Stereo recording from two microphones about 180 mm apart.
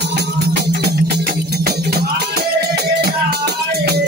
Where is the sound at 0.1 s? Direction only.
60° right (ahead or behind).